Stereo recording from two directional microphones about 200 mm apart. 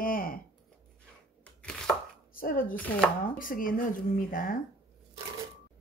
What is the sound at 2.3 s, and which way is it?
A woman's voice, 45° left (ahead or behind).